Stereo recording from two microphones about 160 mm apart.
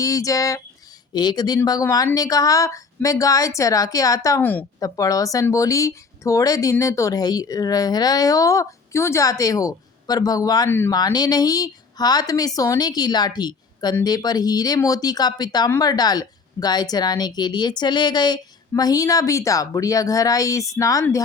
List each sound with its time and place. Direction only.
0.0 s speech: 20° left (ahead or behind)